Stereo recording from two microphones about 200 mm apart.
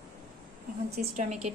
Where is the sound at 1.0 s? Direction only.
40° right (ahead or behind).